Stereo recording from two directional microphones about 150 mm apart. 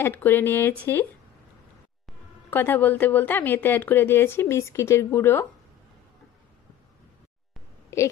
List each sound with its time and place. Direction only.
0.0 s a woman's voice: 15° left (ahead or behind)
2.5 s a woman's voice: 15° left (ahead or behind)
7.9 s speech: 20° left (ahead or behind)